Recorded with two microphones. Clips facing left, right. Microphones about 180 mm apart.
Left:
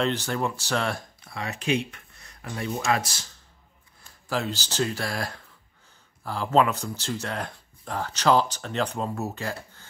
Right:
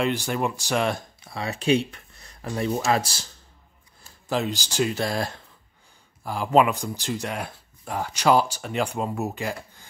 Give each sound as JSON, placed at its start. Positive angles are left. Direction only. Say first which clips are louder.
{"t": 0.0, "sound": "speech", "louder": "right 1 dB", "side_deg": -10}
{"t": 4.3, "sound": "speech", "louder": "right 3 dB", "side_deg": -15}